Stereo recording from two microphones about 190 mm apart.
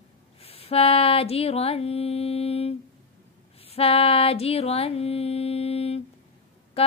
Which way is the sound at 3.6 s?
30° left (ahead or behind).